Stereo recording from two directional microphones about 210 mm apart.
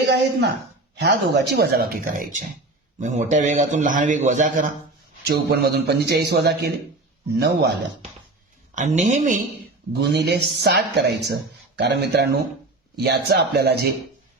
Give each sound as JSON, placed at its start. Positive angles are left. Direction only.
{"t": 0.0, "sound": "a man's voice", "side_deg": -55}
{"t": 5.2, "sound": "a man's voice", "side_deg": -50}
{"t": 8.7, "sound": "a man's voice", "side_deg": -35}
{"t": 10.0, "sound": "a man's voice", "side_deg": -50}